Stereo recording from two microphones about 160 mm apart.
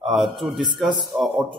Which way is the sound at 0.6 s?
30° right (ahead or behind).